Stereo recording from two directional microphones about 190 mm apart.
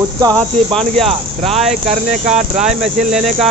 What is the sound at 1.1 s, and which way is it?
Cricket, 30° right (ahead or behind).